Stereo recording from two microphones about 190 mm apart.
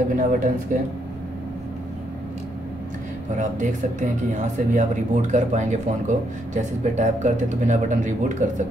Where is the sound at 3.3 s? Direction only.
40° right (ahead or behind).